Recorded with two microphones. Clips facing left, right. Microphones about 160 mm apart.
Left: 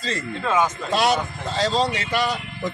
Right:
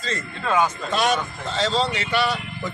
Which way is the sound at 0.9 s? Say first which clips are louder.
Left 1 dB; 35° left (ahead or behind).